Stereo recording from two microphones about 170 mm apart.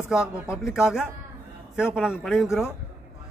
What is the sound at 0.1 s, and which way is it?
A man's voice, 5° right (ahead or behind).